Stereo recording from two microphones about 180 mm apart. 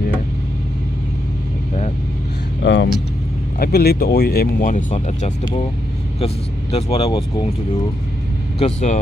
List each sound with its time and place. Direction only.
2.6 s speech: 80° left
3.5 s speech: 60° left (ahead or behind); by 7.1 s 35° left (ahead or behind)
8.5 s speech: 40° left (ahead or behind)